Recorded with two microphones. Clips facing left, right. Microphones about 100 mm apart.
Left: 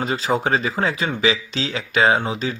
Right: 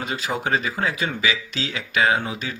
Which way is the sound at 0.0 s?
35° left (ahead or behind).